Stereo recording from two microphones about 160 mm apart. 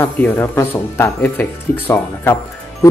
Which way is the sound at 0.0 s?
15° left (ahead or behind).